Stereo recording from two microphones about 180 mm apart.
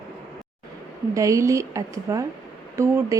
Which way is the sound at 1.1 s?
15° right (ahead or behind).